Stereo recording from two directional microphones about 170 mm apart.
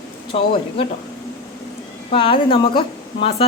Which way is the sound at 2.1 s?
30° left (ahead or behind).